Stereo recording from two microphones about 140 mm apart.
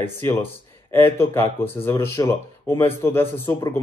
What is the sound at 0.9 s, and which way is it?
Speech, 15° left (ahead or behind).